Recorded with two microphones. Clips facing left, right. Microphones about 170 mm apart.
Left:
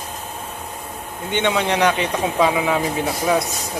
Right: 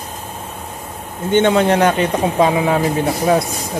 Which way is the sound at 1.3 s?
45° right (ahead or behind).